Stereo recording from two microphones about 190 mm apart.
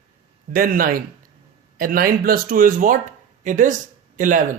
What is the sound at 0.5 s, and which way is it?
Speech, 50° right (ahead or behind).